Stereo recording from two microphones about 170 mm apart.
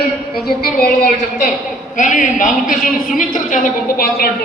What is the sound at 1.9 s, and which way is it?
A woman's voice, 50° left (ahead or behind).